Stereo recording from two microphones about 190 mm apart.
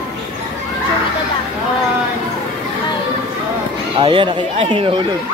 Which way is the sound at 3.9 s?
25° right (ahead or behind).